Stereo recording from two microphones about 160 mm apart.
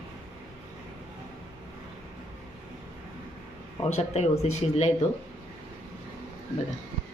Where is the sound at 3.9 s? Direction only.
45° left (ahead or behind).